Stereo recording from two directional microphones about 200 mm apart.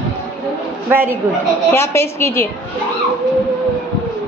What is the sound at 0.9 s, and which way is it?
Speech, 10° right (ahead or behind).